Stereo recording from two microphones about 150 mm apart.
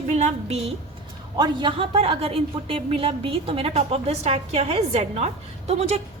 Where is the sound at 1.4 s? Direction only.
30° right (ahead or behind).